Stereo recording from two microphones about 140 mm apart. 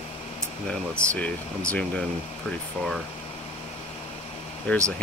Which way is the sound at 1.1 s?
10° left (ahead or behind).